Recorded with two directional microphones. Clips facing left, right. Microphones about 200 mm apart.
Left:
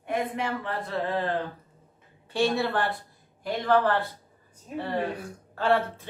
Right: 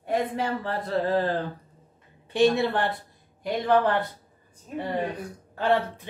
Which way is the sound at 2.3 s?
20° right (ahead or behind).